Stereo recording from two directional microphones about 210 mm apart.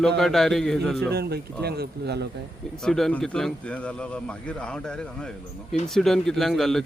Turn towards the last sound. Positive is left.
turn(degrees=0)  # may be behind; listen again after turning